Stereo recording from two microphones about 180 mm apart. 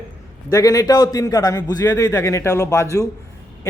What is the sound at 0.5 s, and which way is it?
A man's voice, 20° left (ahead or behind).